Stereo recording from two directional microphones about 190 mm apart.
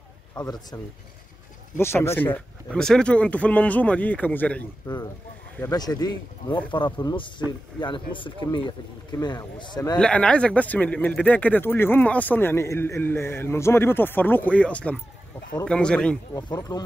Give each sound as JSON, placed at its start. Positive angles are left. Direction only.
{"t": 0.3, "sound": "speech", "side_deg": 20}
{"t": 1.8, "sound": "speech", "side_deg": 15}
{"t": 4.8, "sound": "speech", "side_deg": 20}
{"t": 9.9, "sound": "speech", "side_deg": 5}
{"t": 16.3, "sound": "speech", "side_deg": 20}